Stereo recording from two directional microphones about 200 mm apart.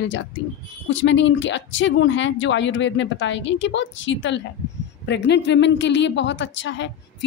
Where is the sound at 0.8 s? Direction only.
70° left (ahead or behind).